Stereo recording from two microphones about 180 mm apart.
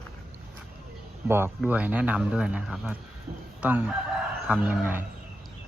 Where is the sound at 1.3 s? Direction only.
10° right (ahead or behind).